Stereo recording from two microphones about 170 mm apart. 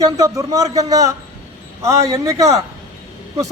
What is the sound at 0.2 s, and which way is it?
A man's voice, 20° right (ahead or behind).